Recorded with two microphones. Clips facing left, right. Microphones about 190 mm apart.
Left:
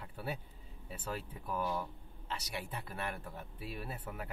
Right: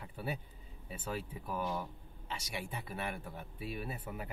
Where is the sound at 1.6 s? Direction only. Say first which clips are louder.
Left 1 dB; 20° right (ahead or behind).